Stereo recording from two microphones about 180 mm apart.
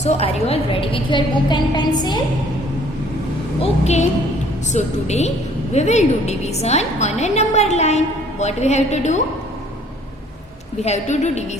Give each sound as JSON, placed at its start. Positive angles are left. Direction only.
{"t": 0.0, "sound": "a woman's voice", "side_deg": 35}
{"t": 3.6, "sound": "a woman's voice", "side_deg": 40}
{"t": 10.8, "sound": "a woman's voice", "side_deg": 40}